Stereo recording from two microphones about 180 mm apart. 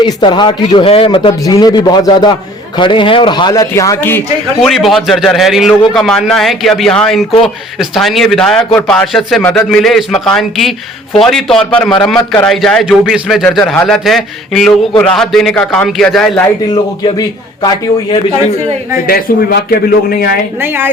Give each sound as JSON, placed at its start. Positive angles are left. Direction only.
{"t": 0.0, "sound": "a man's voice", "side_deg": 25}
{"t": 4.6, "sound": "a man's voice", "side_deg": 0}
{"t": 16.7, "sound": "a man's voice", "side_deg": 25}
{"t": 19.0, "sound": "a man's voice", "side_deg": 55}
{"t": 20.6, "sound": "a woman's voice", "side_deg": -10}